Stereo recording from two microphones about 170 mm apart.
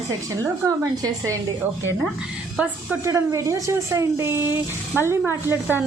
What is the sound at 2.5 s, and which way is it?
A woman's voice, 10° right (ahead or behind).